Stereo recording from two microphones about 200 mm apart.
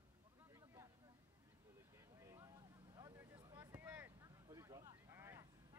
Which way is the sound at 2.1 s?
15° right (ahead or behind).